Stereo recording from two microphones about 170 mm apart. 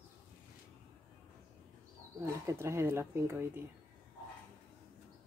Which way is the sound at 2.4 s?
15° right (ahead or behind).